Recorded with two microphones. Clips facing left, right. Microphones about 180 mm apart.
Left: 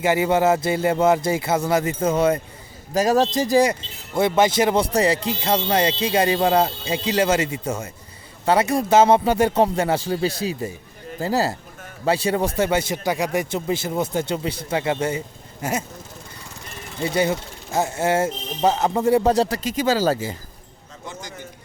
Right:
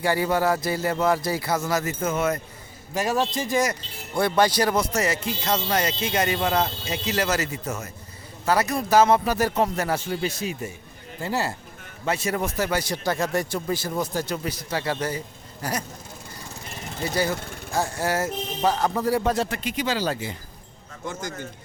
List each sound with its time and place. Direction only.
0.0 s speech: 20° left (ahead or behind)
12.9 s speech: 15° left (ahead or behind)
17.0 s speech: 25° left (ahead or behind); by 20.3 s 40° left (ahead or behind)
21.1 s speech: 50° right (ahead or behind)